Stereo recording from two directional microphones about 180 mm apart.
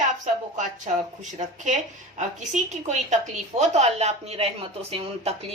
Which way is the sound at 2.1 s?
40° right (ahead or behind).